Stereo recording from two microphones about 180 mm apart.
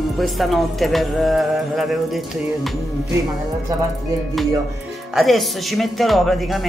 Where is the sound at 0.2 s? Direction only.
Centre (ahead or behind).